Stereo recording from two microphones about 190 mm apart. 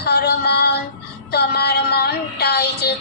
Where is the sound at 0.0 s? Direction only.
60° left (ahead or behind).